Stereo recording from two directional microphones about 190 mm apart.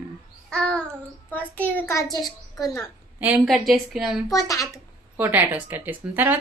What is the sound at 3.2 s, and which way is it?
Speech, 5° right (ahead or behind).